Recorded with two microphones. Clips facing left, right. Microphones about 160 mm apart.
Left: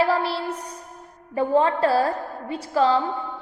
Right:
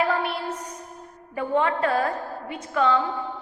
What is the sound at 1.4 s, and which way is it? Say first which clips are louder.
A woman's voice: left 4 dB; 35° left (ahead or behind).